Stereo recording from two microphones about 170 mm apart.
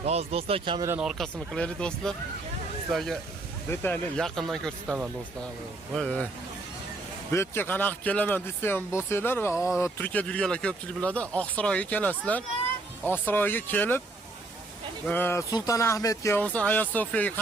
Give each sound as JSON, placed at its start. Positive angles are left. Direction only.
{"t": 0.0, "sound": "speech", "side_deg": -40}
{"t": 0.9, "sound": "speech", "side_deg": -5}
{"t": 3.7, "sound": "speech", "side_deg": 10}
{"t": 7.3, "sound": "speech", "side_deg": 15}
{"t": 15.0, "sound": "speech", "side_deg": 10}